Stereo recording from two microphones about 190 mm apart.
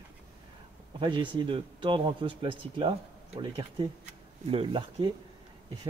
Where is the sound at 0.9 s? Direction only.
25° right (ahead or behind).